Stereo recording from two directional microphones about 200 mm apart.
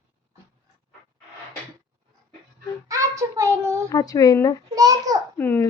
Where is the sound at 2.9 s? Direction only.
15° right (ahead or behind).